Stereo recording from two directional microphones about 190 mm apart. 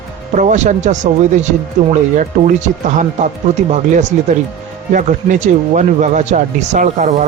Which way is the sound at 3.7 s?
40° right (ahead or behind).